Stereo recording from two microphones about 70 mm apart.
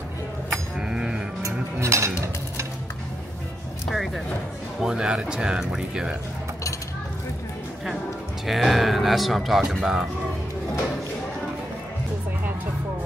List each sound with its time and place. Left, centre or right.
0.7 s a sound: centre
1.4 s music: right
3.9 s music: centre
4.7 s speech: centre
8.5 s speech: centre